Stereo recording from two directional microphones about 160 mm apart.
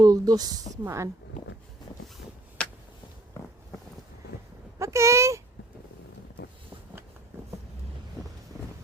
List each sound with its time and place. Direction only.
0.0 s speech: 25° right (ahead or behind)
2.6 s a sound: 5° left (ahead or behind)
4.8 s speech: 20° right (ahead or behind)